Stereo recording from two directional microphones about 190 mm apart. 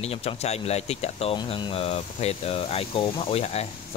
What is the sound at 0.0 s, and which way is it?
Speech, 30° left (ahead or behind).